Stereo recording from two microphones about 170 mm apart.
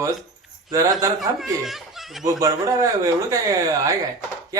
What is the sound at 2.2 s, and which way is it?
Speech, 20° right (ahead or behind).